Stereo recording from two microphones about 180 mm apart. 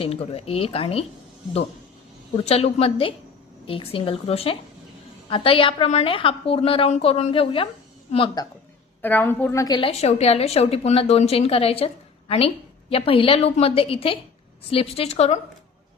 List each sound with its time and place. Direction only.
0.0 s a woman's voice: 30° left (ahead or behind)
2.3 s a woman's voice: 35° left (ahead or behind)
9.0 s a woman's voice: 10° left (ahead or behind); by 11.9 s 35° left (ahead or behind)
12.9 s a woman's voice: 30° left (ahead or behind)